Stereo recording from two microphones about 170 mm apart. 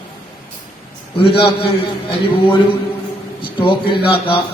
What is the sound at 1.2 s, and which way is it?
Speech, 30° left (ahead or behind).